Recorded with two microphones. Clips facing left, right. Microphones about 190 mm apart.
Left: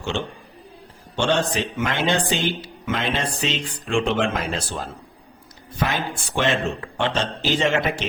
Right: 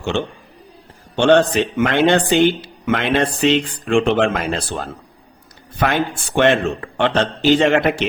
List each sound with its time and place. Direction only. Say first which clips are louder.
1.1 s speech: right 8 dB; 60° right (ahead or behind)